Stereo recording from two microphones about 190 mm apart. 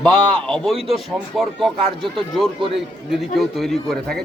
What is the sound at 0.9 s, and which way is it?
Speech, centre (ahead or behind).